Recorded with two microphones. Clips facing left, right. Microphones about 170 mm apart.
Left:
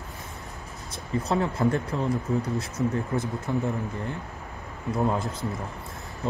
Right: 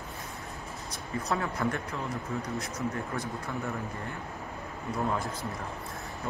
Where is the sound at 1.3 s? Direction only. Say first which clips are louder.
Left 6 dB; 25° left (ahead or behind).